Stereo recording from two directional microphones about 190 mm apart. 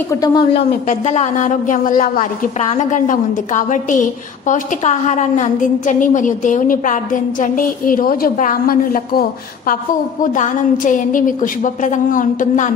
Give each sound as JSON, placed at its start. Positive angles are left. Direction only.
{"t": 0.1, "sound": "speech", "side_deg": 20}
{"t": 0.8, "sound": "a woman's voice", "side_deg": 35}